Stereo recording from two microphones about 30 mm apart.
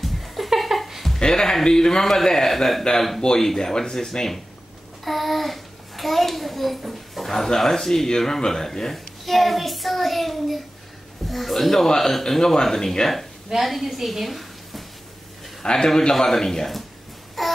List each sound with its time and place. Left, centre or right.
0.0 s a sound: centre
1.2 s a child's voice: centre
3.2 s speech: left
5.0 s a child's voice: centre
7.4 s speech: centre
8.9 s a child's voice: centre
13.7 s a woman's voice: centre
15.6 s a man's voice: left
16.2 s speech: centre
17.4 s a sound: centre